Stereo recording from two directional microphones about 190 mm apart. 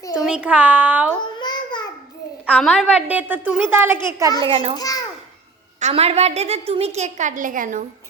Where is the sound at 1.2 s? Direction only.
25° left (ahead or behind).